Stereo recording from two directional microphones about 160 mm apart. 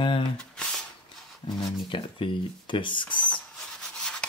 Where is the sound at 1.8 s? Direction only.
30° left (ahead or behind).